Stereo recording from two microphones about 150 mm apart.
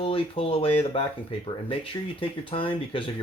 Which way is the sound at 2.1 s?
35° left (ahead or behind).